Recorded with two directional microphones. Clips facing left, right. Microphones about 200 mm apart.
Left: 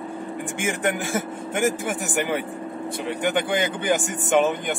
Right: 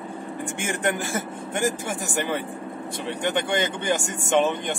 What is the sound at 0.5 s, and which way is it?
A man's voice, centre (ahead or behind).